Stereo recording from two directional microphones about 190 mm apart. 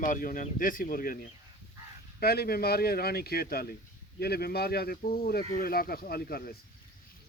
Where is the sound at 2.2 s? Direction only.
55° left (ahead or behind).